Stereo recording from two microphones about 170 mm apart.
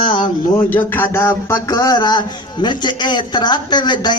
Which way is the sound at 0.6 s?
10° left (ahead or behind).